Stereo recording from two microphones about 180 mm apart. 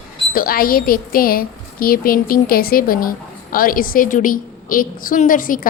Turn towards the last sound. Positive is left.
turn(degrees=50)  # may be behind; listen again after turning